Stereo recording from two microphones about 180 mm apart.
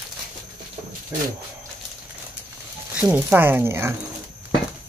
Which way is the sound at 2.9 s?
10° right (ahead or behind).